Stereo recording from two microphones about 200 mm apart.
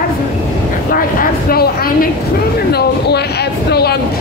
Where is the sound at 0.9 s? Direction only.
45° left (ahead or behind).